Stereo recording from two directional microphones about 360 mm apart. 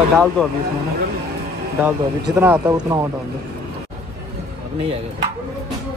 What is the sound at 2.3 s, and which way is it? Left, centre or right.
Speech, centre.